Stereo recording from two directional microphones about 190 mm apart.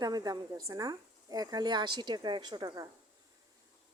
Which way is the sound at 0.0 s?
20° right (ahead or behind).